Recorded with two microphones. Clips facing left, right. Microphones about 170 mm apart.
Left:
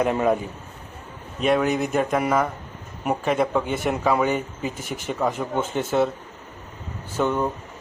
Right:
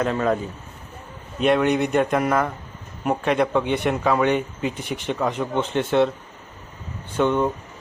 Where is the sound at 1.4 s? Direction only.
Centre (ahead or behind).